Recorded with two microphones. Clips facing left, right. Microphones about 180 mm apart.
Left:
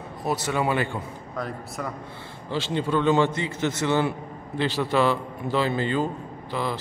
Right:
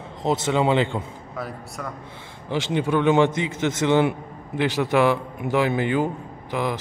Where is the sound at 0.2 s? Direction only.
20° right (ahead or behind).